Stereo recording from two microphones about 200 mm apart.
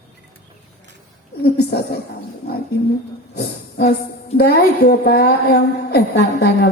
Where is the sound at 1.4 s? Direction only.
55° left (ahead or behind).